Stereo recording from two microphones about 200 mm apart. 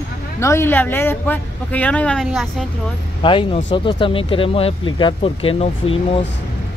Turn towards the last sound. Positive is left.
turn(degrees=30)  # may be behind; listen again after turning